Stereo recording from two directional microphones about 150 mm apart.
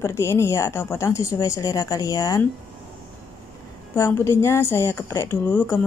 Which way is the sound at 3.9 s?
20° left (ahead or behind).